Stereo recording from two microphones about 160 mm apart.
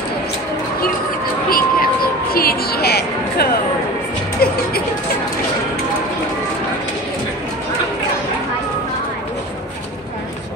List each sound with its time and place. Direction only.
1.5 s music: 65° left (ahead or behind); by 3.5 s 85° left
4.4 s music: 70° left (ahead or behind)